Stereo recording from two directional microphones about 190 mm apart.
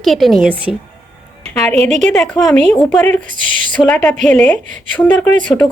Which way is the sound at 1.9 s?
40° right (ahead or behind).